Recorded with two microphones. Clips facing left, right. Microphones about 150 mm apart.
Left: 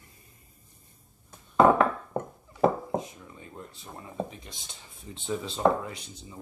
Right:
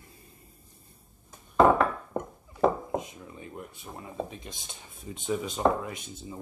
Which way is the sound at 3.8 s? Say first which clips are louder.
Left 2 dB; 15° right (ahead or behind).